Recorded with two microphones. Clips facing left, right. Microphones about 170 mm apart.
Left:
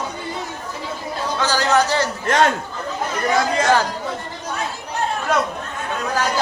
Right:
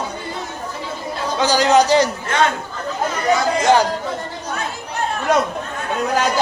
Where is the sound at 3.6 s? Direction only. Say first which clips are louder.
Right 4 dB; 20° right (ahead or behind).